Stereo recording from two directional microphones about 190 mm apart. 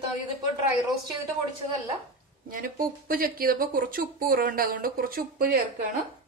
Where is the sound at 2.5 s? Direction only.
45° right (ahead or behind).